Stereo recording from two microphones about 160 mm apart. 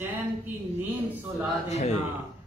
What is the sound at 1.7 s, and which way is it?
Speech, 45° left (ahead or behind).